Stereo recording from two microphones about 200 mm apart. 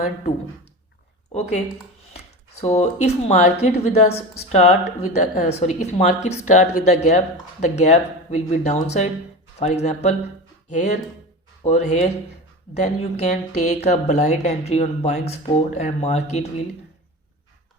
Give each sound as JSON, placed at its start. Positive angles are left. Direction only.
{"t": 1.3, "sound": "speech", "side_deg": 35}